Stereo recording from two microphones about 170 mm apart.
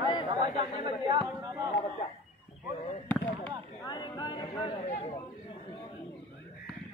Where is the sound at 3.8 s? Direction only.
25° left (ahead or behind).